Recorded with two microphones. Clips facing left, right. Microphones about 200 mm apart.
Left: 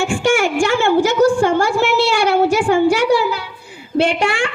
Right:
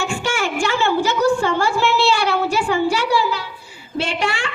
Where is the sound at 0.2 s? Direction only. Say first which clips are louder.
Left 6 dB; 45° left (ahead or behind).